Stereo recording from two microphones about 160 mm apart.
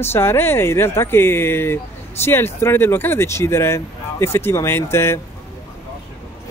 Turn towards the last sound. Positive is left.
turn(degrees=15)  # may be behind; listen again after turning